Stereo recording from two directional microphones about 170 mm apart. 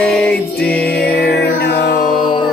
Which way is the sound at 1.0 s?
75° left (ahead or behind).